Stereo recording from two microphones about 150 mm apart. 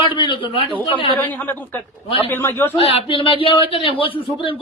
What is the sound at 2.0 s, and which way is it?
Speech, 35° left (ahead or behind).